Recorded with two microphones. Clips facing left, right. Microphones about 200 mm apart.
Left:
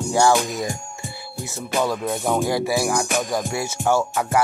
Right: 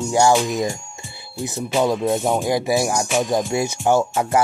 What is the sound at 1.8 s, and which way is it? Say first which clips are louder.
Music: right 4 dB; 20° right (ahead or behind).